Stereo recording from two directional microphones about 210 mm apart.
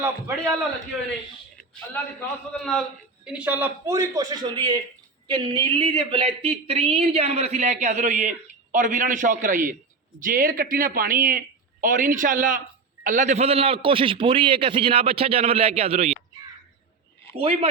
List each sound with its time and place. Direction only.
1.9 s a man's voice: centre (ahead or behind); by 16.1 s 30° right (ahead or behind)
17.3 s a man's voice: 25° right (ahead or behind)